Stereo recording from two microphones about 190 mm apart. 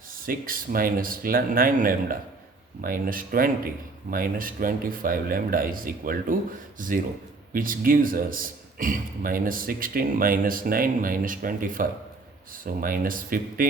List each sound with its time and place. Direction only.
0.1 s a man's voice: 50° right (ahead or behind)